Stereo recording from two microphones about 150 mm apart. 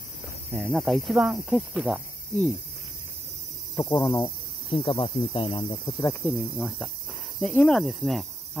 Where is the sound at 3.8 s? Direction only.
15° left (ahead or behind).